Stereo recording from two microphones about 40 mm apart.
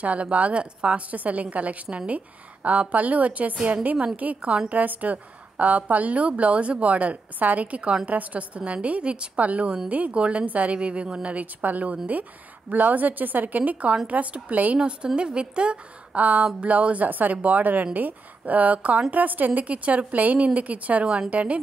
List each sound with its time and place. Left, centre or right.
0.0 s a woman's voice: right
4.4 s a woman's voice: right
4.6 s a woman's voice: right
11.2 s a woman's voice: right
14.8 s a woman's voice: right
16.2 s a sound: right
16.6 s a woman's voice: right